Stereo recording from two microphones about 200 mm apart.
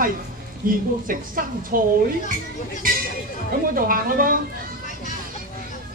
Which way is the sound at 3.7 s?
45° right (ahead or behind).